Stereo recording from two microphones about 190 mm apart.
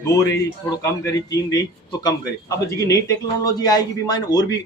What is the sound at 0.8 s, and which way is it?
A man's voice, 15° left (ahead or behind).